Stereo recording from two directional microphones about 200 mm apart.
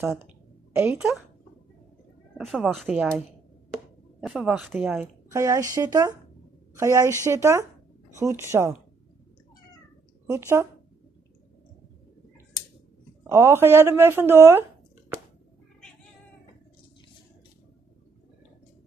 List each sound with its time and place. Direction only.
0.7 s a woman's voice: 10° right (ahead or behind)
2.3 s speech: centre (ahead or behind)
4.2 s speech: centre (ahead or behind)
5.3 s a woman's voice: 15° right (ahead or behind)
10.2 s speech: 15° right (ahead or behind)
13.3 s a woman's voice: 15° right (ahead or behind)